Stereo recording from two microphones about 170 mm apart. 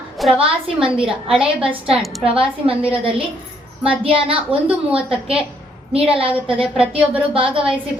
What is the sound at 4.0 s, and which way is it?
Speech, 35° right (ahead or behind).